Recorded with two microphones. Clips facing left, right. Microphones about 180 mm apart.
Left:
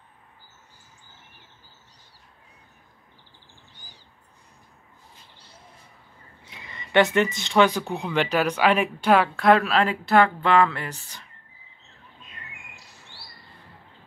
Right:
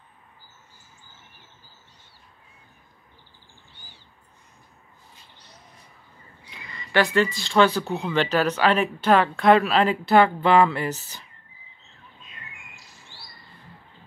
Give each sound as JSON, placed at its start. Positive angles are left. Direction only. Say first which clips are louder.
{"t": 3.7, "sound": "bird", "louder": "right 1 dB", "side_deg": 40}
{"t": 6.4, "sound": "speech", "louder": "right 1 dB", "side_deg": 20}